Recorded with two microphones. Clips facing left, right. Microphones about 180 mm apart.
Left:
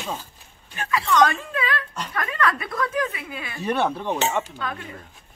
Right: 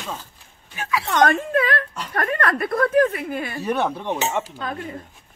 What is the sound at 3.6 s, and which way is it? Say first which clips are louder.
Speech: left 2 dB; 5° right (ahead or behind).